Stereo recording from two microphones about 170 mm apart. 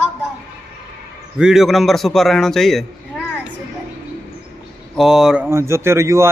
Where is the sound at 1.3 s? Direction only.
5° right (ahead or behind).